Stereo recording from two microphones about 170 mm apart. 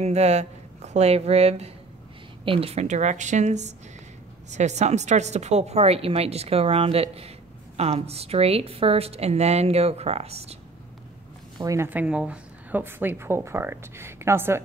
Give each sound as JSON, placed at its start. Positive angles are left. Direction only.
{"t": 0.0, "sound": "a woman's voice", "side_deg": -40}
{"t": 11.5, "sound": "a woman's voice", "side_deg": -20}